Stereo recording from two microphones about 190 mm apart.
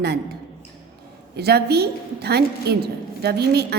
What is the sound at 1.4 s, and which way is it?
A woman's voice, 60° right (ahead or behind).